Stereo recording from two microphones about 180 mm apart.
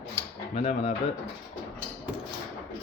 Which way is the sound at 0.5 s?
35° left (ahead or behind).